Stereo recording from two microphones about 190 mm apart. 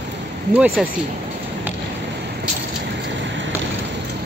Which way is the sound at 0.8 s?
Centre (ahead or behind).